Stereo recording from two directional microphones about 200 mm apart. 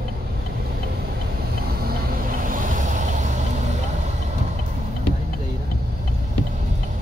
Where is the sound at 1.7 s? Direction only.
50° right (ahead or behind).